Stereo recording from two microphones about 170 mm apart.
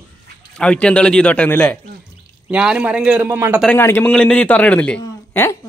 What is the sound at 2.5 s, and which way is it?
A man's voice, 5° right (ahead or behind).